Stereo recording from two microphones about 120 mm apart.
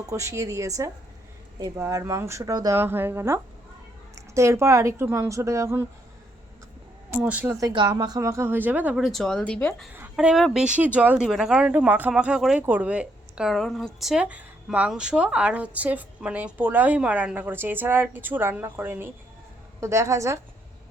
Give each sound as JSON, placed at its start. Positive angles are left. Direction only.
{"t": 0.0, "sound": "a woman's voice", "side_deg": -25}
{"t": 2.7, "sound": "a woman's voice", "side_deg": -15}
{"t": 7.1, "sound": "a woman's voice", "side_deg": -10}
{"t": 7.7, "sound": "a woman's voice", "side_deg": -40}
{"t": 9.0, "sound": "speech", "side_deg": 0}
{"t": 10.2, "sound": "a woman's voice", "side_deg": -5}
{"t": 11.2, "sound": "a woman's voice", "side_deg": -5}